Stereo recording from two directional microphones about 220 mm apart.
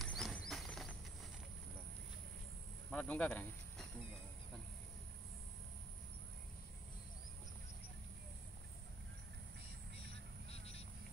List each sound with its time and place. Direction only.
0.0 s a sound: centre (ahead or behind)
2.9 s speech: 5° left (ahead or behind)
10.5 s duck: 25° left (ahead or behind)